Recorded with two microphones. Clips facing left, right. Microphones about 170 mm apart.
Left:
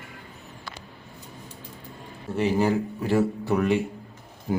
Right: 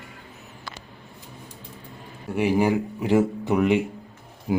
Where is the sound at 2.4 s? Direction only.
15° right (ahead or behind).